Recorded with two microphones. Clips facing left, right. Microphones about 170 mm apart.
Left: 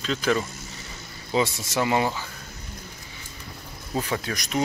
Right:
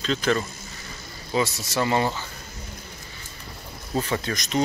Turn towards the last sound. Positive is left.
turn(degrees=10)  # may be behind; listen again after turning